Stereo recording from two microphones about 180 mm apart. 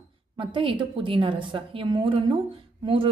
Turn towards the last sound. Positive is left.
turn(degrees=-30)  # may be behind; listen again after turning